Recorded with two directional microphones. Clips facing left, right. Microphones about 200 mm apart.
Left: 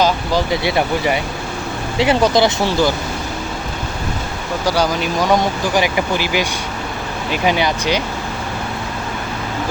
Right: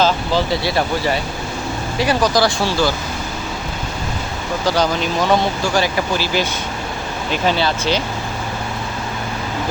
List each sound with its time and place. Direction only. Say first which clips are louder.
0.0 s speech: even; 15° left (ahead or behind)
4.6 s speech: even; 10° left (ahead or behind)